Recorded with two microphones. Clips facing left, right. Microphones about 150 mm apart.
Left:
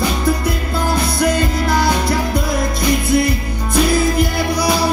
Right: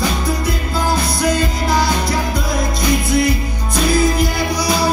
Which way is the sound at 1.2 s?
55° left (ahead or behind).